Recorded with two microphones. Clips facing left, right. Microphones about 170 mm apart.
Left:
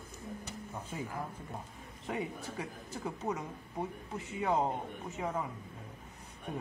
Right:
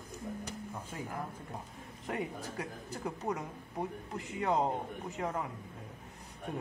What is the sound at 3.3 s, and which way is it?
A man's voice, 5° left (ahead or behind).